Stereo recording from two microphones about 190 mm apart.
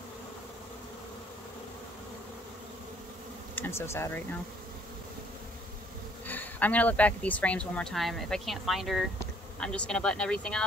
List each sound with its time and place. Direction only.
3.5 s speech: 10° left (ahead or behind)
6.2 s speech: 10° left (ahead or behind)